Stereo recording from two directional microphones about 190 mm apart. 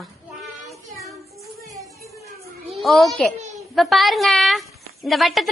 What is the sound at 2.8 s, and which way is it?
Speech, centre (ahead or behind).